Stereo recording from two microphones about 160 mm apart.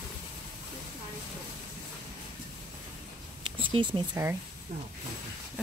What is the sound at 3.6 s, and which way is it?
Speech, 30° right (ahead or behind).